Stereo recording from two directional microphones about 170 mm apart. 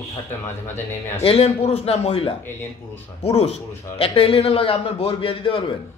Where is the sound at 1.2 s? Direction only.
35° left (ahead or behind).